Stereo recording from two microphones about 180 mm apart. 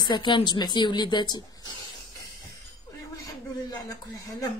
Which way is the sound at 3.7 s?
20° left (ahead or behind).